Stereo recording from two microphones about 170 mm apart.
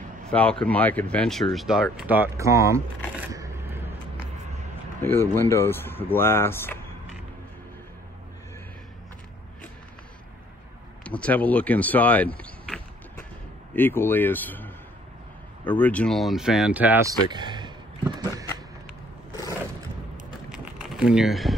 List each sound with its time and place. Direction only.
0.3 s speech: 5° left (ahead or behind); by 3.9 s 15° right (ahead or behind)
5.0 s speech: 15° left (ahead or behind)
11.1 s speech: 5° left (ahead or behind); by 17.1 s 10° right (ahead or behind)
17.3 s a sound: 25° right (ahead or behind)
20.5 s typing: centre (ahead or behind)